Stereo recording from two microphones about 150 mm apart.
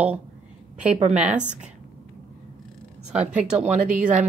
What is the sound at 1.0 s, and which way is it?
Speech, 55° right (ahead or behind).